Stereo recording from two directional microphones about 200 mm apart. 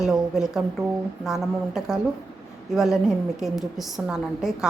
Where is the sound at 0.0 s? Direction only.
Centre (ahead or behind).